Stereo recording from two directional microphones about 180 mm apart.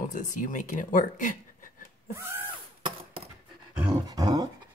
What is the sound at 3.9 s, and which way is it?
Dog, 20° right (ahead or behind).